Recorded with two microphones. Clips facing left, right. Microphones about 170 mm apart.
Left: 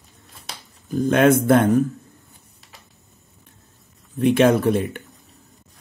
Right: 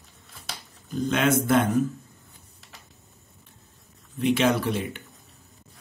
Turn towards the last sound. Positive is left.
turn(degrees=50)  # may be behind; listen again after turning